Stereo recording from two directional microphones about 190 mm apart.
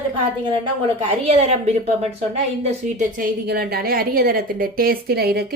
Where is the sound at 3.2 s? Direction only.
55° right (ahead or behind).